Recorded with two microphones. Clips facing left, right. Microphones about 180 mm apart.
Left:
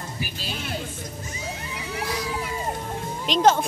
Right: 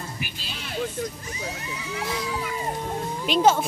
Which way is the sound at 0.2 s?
45° left (ahead or behind).